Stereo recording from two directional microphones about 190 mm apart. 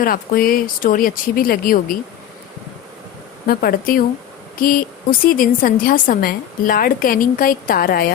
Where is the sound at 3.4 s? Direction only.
50° left (ahead or behind).